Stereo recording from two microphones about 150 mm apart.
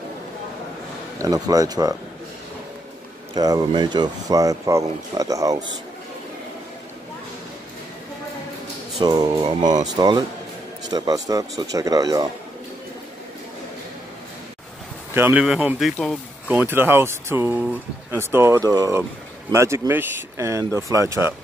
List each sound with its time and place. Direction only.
1.1 s speech: 25° right (ahead or behind)
3.3 s speech: 25° right (ahead or behind)
9.0 s speech: 25° right (ahead or behind)
15.1 s speech: 10° right (ahead or behind)